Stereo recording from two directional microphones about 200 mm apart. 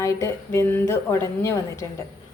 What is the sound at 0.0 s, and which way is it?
A woman's voice, 15° left (ahead or behind).